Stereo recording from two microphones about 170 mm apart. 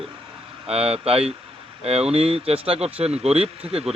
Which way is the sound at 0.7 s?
35° right (ahead or behind).